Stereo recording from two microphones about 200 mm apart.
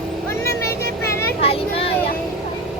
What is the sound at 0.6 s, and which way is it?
Vehicle, 15° left (ahead or behind).